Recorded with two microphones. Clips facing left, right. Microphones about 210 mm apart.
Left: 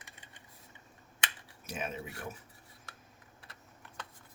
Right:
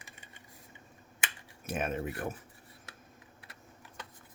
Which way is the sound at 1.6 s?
55° right (ahead or behind).